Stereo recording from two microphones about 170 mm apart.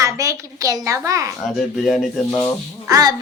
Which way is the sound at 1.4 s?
Centre (ahead or behind).